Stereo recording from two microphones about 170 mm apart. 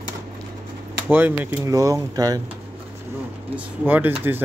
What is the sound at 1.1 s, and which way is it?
Speech, 10° right (ahead or behind).